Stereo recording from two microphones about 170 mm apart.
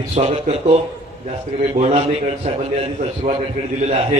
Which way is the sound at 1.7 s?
40° right (ahead or behind).